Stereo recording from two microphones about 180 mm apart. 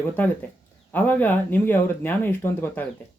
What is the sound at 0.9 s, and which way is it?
Speech, 10° left (ahead or behind).